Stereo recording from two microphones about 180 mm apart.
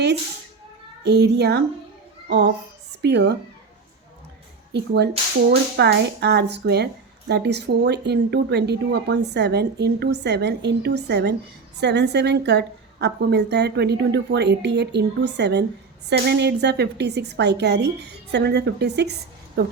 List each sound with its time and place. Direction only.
1.0 s speech: 70° right (ahead or behind)
3.0 s speech: 70° right (ahead or behind)
5.5 s speech: 70° right (ahead or behind)
19.6 s speech: 55° right (ahead or behind)